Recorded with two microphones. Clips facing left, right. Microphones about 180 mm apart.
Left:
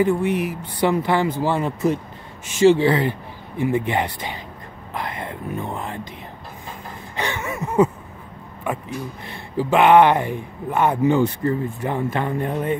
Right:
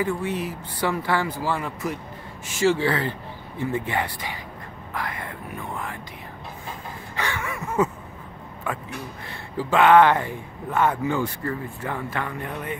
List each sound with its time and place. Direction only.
0.0 s speech: 15° left (ahead or behind)
7.2 s a sound: 20° left (ahead or behind)
8.7 s speech: 15° left (ahead or behind)